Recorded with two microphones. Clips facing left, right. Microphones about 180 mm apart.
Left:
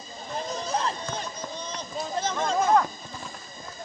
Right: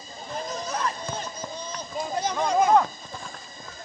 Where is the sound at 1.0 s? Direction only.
10° right (ahead or behind).